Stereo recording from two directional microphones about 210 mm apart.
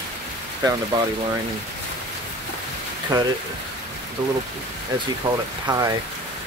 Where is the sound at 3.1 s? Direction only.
20° right (ahead or behind).